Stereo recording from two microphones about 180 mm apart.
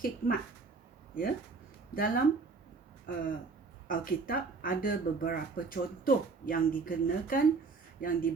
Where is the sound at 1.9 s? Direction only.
50° left (ahead or behind).